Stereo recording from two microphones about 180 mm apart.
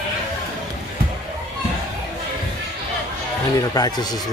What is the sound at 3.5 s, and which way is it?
Speech, 20° left (ahead or behind).